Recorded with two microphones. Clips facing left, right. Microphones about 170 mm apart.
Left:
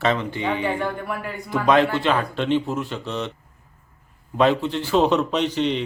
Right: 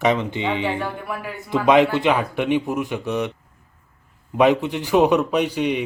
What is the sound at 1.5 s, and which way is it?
A man's voice, 20° right (ahead or behind).